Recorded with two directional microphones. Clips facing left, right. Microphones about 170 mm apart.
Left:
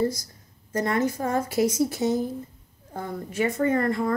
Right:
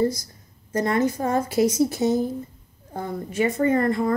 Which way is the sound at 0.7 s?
20° right (ahead or behind).